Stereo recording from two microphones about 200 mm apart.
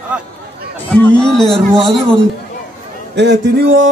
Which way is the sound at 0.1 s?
5° right (ahead or behind).